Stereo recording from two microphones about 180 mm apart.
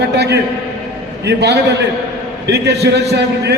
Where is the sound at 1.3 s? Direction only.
70° right (ahead or behind).